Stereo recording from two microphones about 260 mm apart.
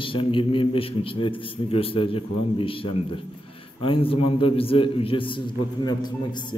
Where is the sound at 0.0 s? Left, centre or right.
Centre.